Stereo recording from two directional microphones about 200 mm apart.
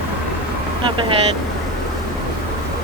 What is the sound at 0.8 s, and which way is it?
Speech, 25° right (ahead or behind).